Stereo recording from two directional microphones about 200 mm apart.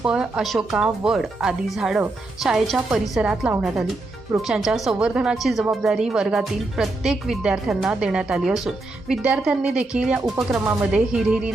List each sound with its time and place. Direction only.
0.0 s speech: 5° right (ahead or behind)